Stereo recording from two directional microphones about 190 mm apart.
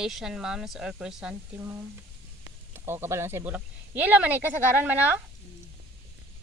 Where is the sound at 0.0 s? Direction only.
Centre (ahead or behind).